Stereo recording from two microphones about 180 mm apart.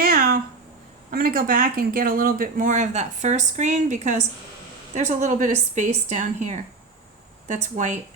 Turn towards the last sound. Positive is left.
turn(degrees=-40)  # may be behind; listen again after turning